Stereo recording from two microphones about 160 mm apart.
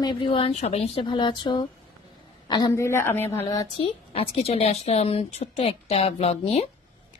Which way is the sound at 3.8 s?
40° left (ahead or behind).